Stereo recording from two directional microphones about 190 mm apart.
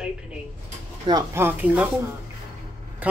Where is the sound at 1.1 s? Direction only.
15° right (ahead or behind).